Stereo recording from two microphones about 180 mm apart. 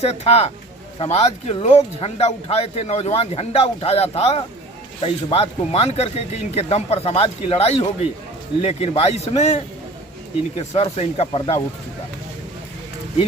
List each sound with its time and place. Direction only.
0.0 s speech: 35° left (ahead or behind)
10.8 s speech: 35° left (ahead or behind)